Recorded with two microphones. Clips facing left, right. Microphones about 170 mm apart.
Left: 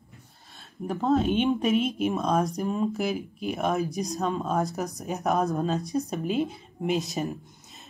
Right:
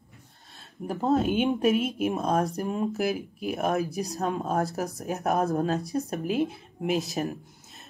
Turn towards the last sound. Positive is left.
turn(degrees=0)  # may be behind; listen again after turning